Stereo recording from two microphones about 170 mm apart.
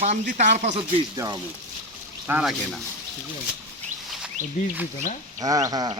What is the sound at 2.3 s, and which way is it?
Speech, 5° right (ahead or behind).